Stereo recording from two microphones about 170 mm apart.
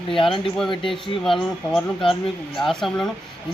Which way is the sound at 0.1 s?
30° left (ahead or behind).